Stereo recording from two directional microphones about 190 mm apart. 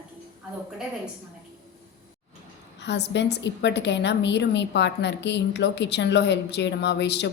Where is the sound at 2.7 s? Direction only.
65° left (ahead or behind).